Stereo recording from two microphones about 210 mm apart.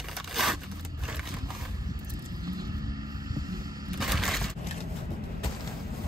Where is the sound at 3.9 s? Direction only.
Centre (ahead or behind).